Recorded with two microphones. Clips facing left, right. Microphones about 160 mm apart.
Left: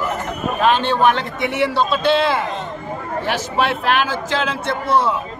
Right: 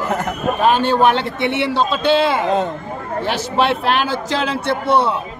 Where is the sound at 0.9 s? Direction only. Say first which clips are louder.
Right 2 dB; 35° right (ahead or behind).